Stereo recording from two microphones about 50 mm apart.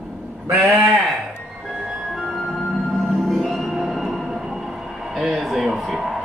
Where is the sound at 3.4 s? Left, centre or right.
Centre.